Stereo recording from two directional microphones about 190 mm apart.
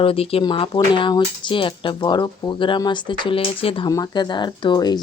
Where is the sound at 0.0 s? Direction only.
30° left (ahead or behind).